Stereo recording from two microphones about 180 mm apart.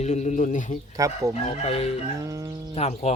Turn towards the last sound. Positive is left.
turn(degrees=35)  # may be behind; listen again after turning